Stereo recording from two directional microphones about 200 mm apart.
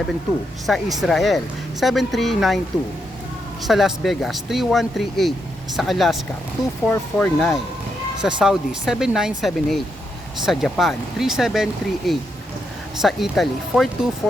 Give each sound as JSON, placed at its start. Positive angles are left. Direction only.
{"t": 0.7, "sound": "speech", "side_deg": 0}
{"t": 3.6, "sound": "speech", "side_deg": 0}